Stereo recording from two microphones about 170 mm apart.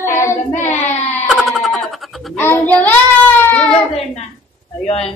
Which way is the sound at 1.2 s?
Centre (ahead or behind).